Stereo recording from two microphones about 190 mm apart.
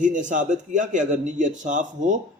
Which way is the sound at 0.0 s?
40° right (ahead or behind).